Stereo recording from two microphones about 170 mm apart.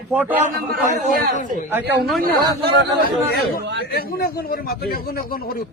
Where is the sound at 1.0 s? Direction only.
45° left (ahead or behind).